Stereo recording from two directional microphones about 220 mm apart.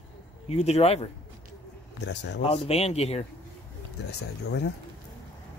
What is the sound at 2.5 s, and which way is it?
Speech, 30° left (ahead or behind).